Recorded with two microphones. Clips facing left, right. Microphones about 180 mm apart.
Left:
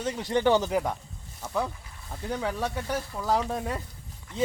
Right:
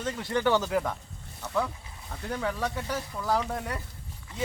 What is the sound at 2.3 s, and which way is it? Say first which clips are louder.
Speech: left 1 dB; 15° left (ahead or behind).